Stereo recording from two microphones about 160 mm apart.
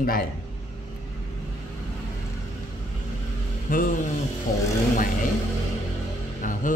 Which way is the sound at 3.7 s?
55° left (ahead or behind).